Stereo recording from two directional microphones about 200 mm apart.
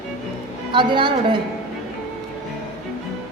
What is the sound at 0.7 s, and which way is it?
Speech, 25° right (ahead or behind).